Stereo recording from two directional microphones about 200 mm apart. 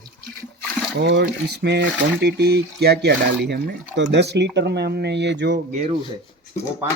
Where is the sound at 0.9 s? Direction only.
55° right (ahead or behind).